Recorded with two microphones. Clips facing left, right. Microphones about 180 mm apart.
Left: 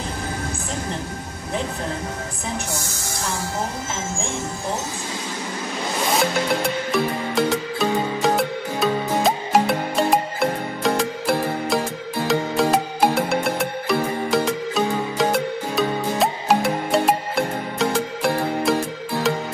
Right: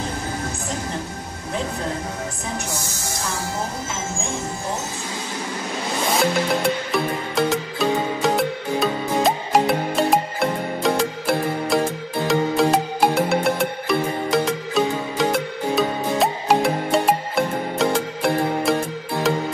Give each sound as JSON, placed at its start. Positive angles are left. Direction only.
{"t": 6.9, "sound": "music", "side_deg": 0}